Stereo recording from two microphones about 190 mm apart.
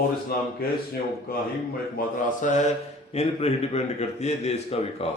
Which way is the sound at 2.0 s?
45° left (ahead or behind).